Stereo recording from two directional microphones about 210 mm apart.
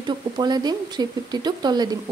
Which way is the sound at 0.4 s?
20° right (ahead or behind).